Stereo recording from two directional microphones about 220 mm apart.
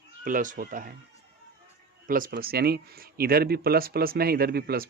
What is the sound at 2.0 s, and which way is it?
Speech, 40° right (ahead or behind).